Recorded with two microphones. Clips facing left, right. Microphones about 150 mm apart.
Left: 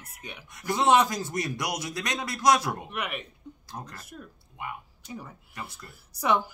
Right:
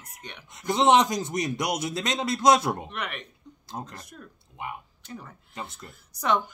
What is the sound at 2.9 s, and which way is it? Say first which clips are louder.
Speech: left 1 dB; 10° left (ahead or behind).